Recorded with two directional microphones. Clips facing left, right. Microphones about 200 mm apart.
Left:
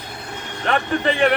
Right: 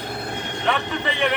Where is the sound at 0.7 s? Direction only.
50° left (ahead or behind).